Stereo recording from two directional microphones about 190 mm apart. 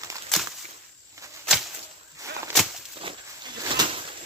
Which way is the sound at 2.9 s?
25° right (ahead or behind).